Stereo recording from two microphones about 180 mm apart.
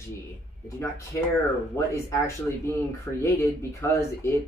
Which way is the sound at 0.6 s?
15° left (ahead or behind).